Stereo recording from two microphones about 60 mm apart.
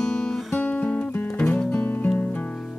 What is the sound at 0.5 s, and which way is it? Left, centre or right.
Music, left.